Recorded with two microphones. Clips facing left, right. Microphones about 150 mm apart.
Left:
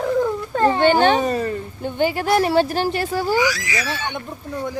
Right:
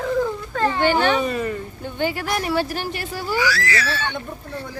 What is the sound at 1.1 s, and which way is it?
Speech, 40° left (ahead or behind).